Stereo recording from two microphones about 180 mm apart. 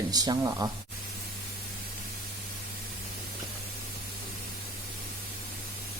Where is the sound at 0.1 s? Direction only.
20° right (ahead or behind).